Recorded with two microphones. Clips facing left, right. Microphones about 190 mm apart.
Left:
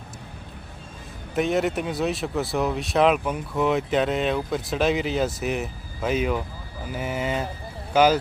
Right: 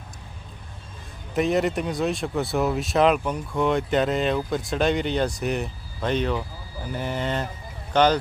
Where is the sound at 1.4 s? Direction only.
Centre (ahead or behind).